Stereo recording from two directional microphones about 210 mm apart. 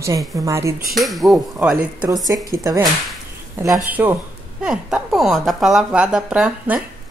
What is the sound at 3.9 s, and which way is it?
A woman's voice, 10° right (ahead or behind).